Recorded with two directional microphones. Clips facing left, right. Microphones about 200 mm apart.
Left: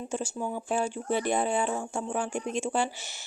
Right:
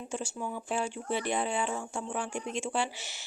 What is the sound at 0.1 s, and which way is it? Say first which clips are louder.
Speech: left 3 dB; 40° left (ahead or behind).